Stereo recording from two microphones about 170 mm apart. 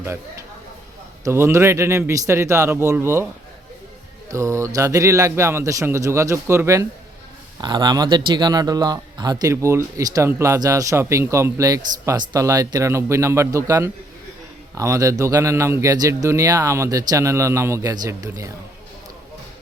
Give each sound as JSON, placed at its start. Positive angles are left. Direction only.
{"t": 1.2, "sound": "speech", "side_deg": -15}
{"t": 4.3, "sound": "speech", "side_deg": -15}